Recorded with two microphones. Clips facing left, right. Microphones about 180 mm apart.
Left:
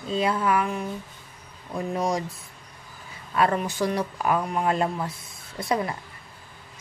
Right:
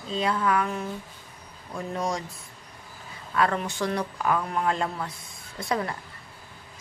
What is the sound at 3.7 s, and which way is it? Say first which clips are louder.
A woman's voice: left 2 dB; 20° left (ahead or behind).